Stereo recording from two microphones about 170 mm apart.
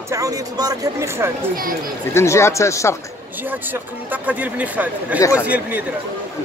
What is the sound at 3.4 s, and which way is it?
Speech, 10° right (ahead or behind).